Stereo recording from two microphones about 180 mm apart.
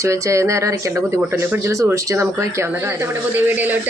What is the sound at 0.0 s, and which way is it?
Speech, 15° right (ahead or behind).